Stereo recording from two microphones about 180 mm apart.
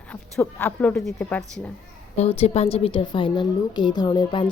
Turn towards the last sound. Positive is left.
turn(degrees=25)  # may be behind; listen again after turning